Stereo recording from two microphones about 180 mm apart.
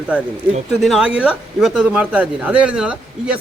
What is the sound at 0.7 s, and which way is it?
Speech, centre (ahead or behind).